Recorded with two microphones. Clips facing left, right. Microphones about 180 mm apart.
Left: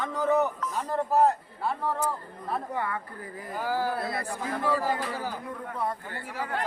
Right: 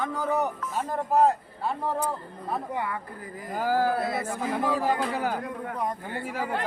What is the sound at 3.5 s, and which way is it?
Speech, 45° right (ahead or behind).